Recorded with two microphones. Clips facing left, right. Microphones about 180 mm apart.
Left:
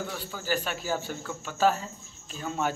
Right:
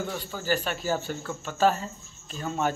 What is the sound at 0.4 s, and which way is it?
Speech, 10° left (ahead or behind).